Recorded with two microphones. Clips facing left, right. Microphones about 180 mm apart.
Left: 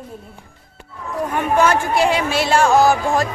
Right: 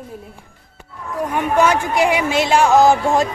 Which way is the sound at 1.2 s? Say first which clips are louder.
Right 1 dB; 15° right (ahead or behind).